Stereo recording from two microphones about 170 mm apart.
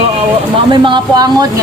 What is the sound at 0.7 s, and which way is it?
Speech, 25° right (ahead or behind).